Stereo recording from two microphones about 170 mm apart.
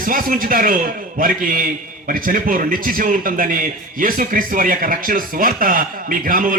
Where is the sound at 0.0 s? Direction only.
55° right (ahead or behind).